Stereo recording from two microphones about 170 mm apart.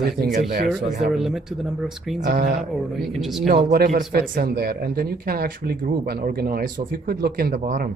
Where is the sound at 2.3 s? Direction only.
55° right (ahead or behind).